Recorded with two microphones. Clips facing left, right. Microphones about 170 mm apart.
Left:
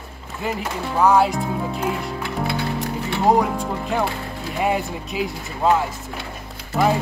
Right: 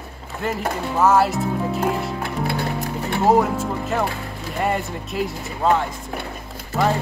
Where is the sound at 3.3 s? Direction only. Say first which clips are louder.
Right 1 dB; 5° right (ahead or behind).